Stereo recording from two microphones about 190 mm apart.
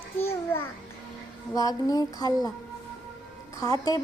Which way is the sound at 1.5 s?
20° left (ahead or behind).